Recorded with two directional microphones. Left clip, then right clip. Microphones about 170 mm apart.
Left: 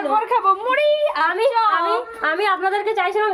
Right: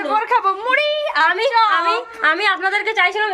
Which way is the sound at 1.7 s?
20° left (ahead or behind).